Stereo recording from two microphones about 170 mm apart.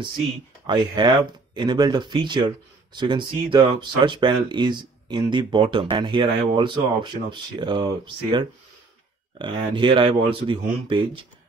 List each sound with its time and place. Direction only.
0.7 s speech: 25° right (ahead or behind)